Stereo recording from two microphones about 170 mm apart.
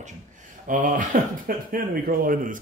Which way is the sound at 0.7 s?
50° right (ahead or behind).